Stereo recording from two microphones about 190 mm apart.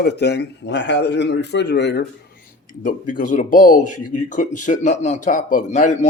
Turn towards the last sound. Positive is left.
turn(degrees=40)  # may be behind; listen again after turning